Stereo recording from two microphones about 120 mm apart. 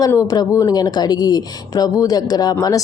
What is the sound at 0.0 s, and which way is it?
Speech, 30° left (ahead or behind).